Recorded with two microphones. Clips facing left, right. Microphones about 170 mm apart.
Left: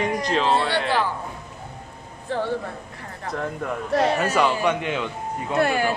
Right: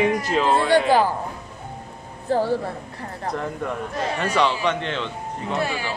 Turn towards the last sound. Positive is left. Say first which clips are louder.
# left 5 dB
turn(degrees=55)  # may be behind; listen again after turning